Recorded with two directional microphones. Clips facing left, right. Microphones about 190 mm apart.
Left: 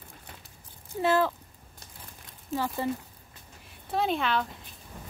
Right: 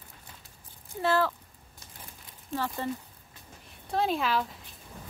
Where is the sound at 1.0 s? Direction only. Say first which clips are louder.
Left 2 dB; 15° left (ahead or behind).